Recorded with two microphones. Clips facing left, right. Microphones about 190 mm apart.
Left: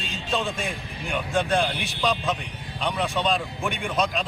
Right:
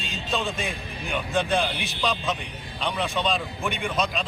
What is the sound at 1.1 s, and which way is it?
A man's voice, centre (ahead or behind).